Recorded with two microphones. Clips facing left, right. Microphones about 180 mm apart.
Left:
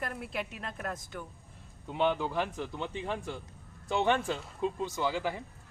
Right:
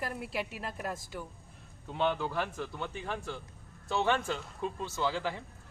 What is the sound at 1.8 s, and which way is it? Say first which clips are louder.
A man's voice: left 2 dB; 15° left (ahead or behind).